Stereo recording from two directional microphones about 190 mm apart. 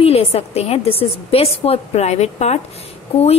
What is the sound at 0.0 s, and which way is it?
Speech, 30° left (ahead or behind).